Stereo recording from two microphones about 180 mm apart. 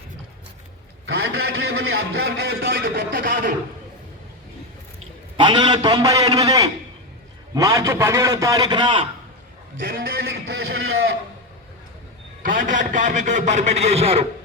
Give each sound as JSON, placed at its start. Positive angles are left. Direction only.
{"t": 1.0, "sound": "a man's voice", "side_deg": -80}
{"t": 5.4, "sound": "a man's voice", "side_deg": -25}
{"t": 9.7, "sound": "a man's voice", "side_deg": -55}
{"t": 12.5, "sound": "a man's voice", "side_deg": -45}